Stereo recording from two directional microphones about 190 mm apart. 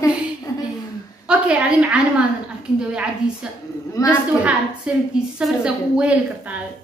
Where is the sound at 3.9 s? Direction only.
15° left (ahead or behind).